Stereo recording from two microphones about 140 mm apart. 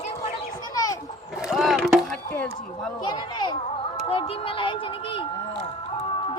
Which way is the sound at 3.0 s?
35° left (ahead or behind).